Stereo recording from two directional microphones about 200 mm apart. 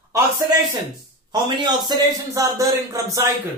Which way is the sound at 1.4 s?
20° right (ahead or behind).